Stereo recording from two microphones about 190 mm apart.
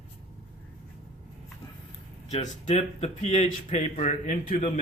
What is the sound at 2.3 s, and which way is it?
Speech, 35° left (ahead or behind).